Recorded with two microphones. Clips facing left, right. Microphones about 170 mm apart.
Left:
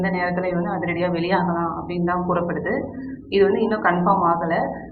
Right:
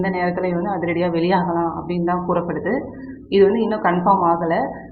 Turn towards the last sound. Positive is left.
turn(degrees=-20)  # may be behind; listen again after turning